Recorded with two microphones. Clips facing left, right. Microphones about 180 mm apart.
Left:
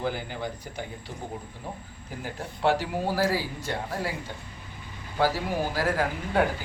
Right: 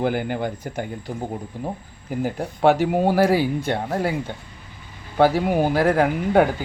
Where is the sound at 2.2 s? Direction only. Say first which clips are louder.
Right 8 dB; 50° right (ahead or behind).